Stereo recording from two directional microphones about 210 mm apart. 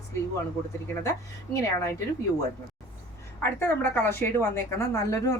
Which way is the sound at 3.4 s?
10° left (ahead or behind).